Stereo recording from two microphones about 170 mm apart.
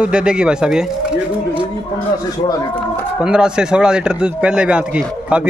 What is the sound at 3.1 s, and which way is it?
Speech, 5° right (ahead or behind).